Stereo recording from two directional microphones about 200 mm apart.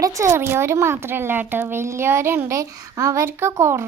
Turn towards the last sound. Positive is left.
turn(degrees=-15)  # may be behind; listen again after turning